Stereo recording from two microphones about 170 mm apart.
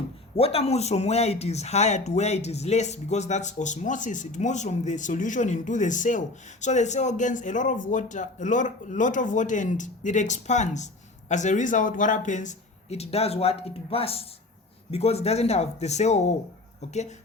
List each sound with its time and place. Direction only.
0.3 s speech: 35° left (ahead or behind)